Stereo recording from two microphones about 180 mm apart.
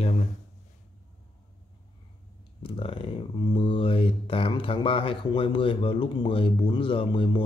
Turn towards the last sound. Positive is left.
turn(degrees=25)  # may be behind; listen again after turning